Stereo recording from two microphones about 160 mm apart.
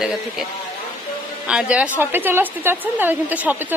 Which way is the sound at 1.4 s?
5° right (ahead or behind).